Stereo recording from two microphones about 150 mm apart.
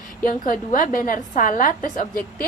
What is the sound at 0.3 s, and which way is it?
A woman's voice, 65° left (ahead or behind).